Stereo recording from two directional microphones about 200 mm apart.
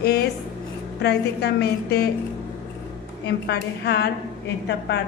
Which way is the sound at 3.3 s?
55° left (ahead or behind).